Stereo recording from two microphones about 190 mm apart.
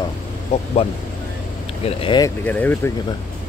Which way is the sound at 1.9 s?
25° left (ahead or behind).